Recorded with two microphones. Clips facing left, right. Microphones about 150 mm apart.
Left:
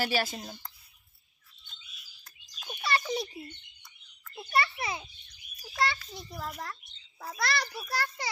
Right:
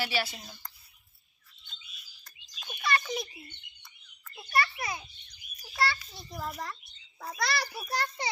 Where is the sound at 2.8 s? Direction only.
30° left (ahead or behind).